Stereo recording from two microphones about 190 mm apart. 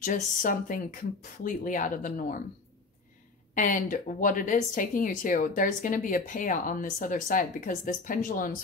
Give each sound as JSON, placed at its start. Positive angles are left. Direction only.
{"t": 0.0, "sound": "speech", "side_deg": 45}
{"t": 3.5, "sound": "speech", "side_deg": 45}